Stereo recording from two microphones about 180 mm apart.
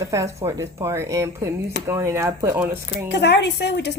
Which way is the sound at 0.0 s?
15° right (ahead or behind).